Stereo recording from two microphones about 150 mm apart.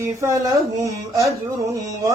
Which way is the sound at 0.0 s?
20° right (ahead or behind).